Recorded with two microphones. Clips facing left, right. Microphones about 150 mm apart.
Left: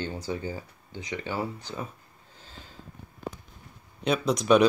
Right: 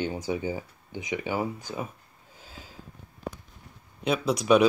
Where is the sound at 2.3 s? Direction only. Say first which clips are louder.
Right 2 dB; 10° right (ahead or behind).